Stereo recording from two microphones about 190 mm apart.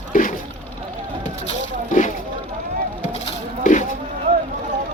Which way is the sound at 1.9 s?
40° left (ahead or behind).